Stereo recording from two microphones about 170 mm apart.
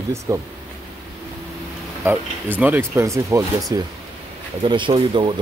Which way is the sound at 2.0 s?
10° right (ahead or behind).